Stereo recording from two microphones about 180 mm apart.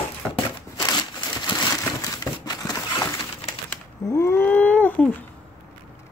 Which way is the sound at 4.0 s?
15° left (ahead or behind).